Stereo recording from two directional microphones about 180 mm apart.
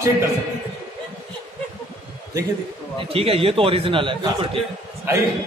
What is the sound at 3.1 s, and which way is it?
A man's voice, 30° right (ahead or behind).